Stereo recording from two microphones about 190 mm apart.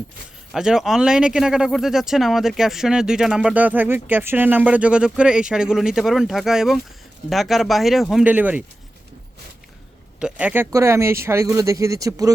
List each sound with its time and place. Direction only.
0.5 s speech: centre (ahead or behind)
10.2 s speech: 5° right (ahead or behind)